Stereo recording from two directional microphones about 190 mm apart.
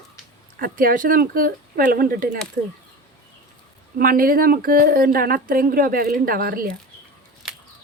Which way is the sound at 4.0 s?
50° right (ahead or behind).